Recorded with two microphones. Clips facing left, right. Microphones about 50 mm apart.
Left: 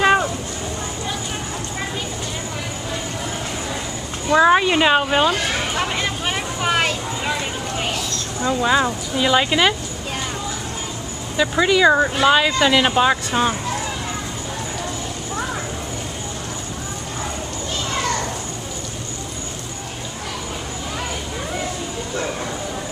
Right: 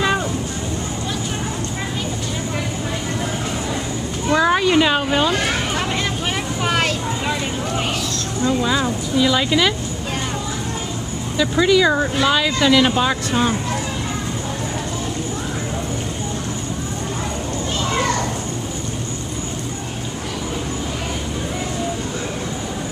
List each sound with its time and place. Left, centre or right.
4.4 s speech: centre
5.8 s a sound: centre
8.6 s speech: centre
11.3 s speech: centre